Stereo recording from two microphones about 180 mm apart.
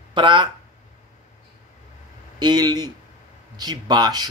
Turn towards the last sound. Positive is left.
turn(degrees=-20)  # may be behind; listen again after turning